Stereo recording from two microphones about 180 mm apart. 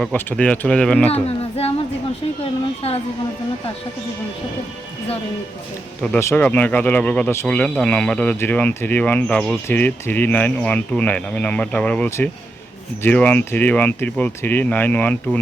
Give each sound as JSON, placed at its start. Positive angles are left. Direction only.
{"t": 0.0, "sound": "speech", "side_deg": 5}
{"t": 1.1, "sound": "speech", "side_deg": 35}
{"t": 6.0, "sound": "speech", "side_deg": 10}